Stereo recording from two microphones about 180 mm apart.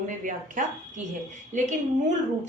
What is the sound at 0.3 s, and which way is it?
A woman's voice, 45° right (ahead or behind).